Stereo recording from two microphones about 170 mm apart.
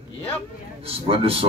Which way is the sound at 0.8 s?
35° right (ahead or behind).